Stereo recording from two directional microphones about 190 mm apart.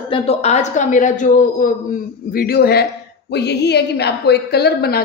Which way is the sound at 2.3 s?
55° left (ahead or behind).